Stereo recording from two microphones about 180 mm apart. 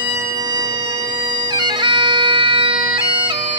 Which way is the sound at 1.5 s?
25° right (ahead or behind).